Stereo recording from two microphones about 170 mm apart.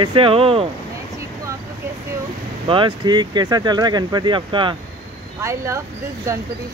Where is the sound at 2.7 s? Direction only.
25° right (ahead or behind).